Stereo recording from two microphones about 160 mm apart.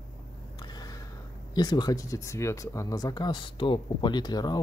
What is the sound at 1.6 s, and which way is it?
Speech, 25° left (ahead or behind).